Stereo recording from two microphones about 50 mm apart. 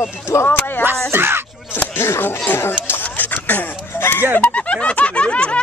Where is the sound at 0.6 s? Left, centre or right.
Left.